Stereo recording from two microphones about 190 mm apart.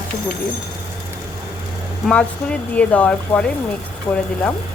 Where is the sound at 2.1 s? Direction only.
5° left (ahead or behind).